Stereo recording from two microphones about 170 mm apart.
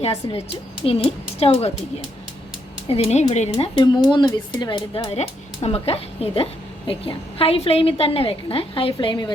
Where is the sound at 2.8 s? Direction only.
35° left (ahead or behind).